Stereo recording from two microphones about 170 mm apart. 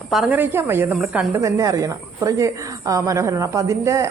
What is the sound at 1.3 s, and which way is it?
A woman's voice, 15° right (ahead or behind).